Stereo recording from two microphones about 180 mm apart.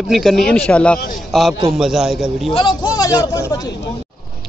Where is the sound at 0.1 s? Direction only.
Centre (ahead or behind).